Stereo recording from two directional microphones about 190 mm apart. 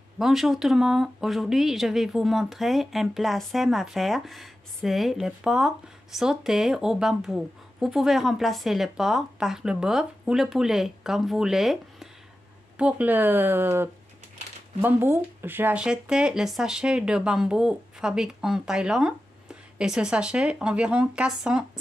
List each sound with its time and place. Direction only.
0.2 s speech: centre (ahead or behind)